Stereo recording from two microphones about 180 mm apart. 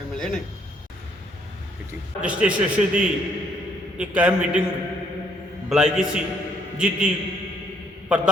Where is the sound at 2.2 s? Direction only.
5° right (ahead or behind).